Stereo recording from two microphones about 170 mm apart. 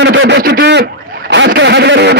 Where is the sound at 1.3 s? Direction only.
90° right.